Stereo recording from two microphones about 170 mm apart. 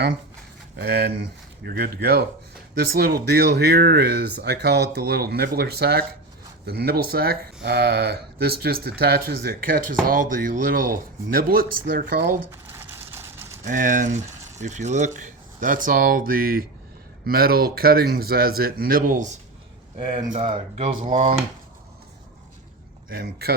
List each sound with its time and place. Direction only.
0.8 s speech: 70° right (ahead or behind)
12.5 s a sound: 15° right (ahead or behind)
13.7 s speech: 50° right (ahead or behind)
20.0 s speech: 25° right (ahead or behind)
21.0 s speech: 45° right (ahead or behind)
23.0 s speech: 60° right (ahead or behind)